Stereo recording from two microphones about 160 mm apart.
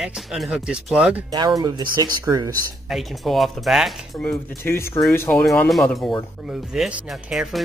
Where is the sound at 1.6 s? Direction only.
25° right (ahead or behind).